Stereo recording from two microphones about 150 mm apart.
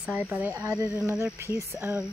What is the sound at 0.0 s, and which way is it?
Speech, 10° right (ahead or behind).